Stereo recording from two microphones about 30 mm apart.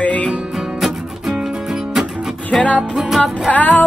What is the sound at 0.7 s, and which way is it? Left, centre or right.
Music, centre.